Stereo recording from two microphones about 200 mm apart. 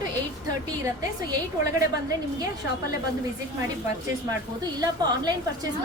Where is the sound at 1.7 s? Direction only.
20° right (ahead or behind).